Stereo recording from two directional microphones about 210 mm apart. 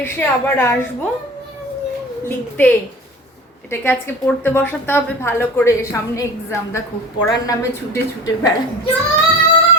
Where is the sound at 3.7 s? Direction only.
10° left (ahead or behind).